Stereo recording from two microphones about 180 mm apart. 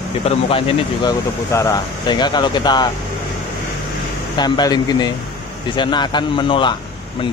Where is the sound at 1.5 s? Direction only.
20° left (ahead or behind).